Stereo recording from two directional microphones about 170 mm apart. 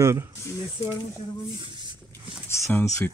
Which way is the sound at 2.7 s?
15° left (ahead or behind).